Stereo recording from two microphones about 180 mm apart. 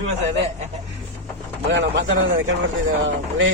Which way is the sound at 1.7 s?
85° right.